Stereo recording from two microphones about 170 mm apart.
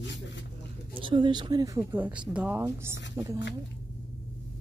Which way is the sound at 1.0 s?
30° right (ahead or behind).